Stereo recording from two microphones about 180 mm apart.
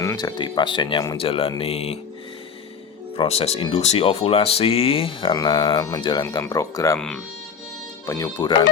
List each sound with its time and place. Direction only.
0.0 s speech: 20° left (ahead or behind)
3.2 s speech: 35° left (ahead or behind); by 7.0 s 20° left (ahead or behind)
8.0 s speech: 20° left (ahead or behind)